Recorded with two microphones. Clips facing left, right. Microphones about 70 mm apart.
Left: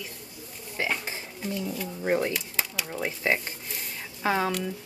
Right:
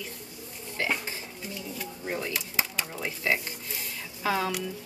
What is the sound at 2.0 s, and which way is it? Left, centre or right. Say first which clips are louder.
Speech: left 8 dB; left.